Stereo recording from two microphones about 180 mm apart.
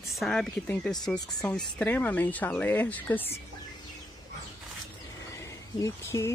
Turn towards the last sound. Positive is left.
turn(degrees=15)  # may be behind; listen again after turning